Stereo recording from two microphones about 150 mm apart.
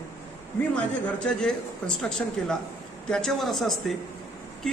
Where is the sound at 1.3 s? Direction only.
5° left (ahead or behind).